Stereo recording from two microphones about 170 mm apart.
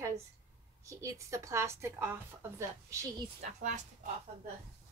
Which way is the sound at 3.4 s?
45° right (ahead or behind).